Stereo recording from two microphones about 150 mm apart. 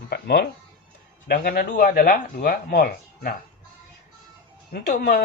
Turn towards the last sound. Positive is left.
turn(degrees=70)  # may be behind; listen again after turning